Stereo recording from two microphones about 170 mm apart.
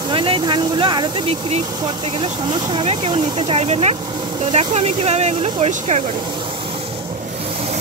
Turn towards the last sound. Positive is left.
turn(degrees=-40)  # may be behind; listen again after turning